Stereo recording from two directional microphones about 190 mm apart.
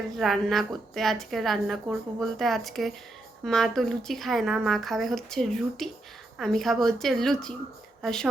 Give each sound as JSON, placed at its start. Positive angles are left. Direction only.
{"t": 0.2, "sound": "a woman's voice", "side_deg": 0}